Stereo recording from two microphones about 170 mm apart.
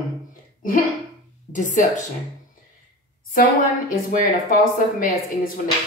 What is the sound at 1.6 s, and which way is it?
Speech, 50° left (ahead or behind).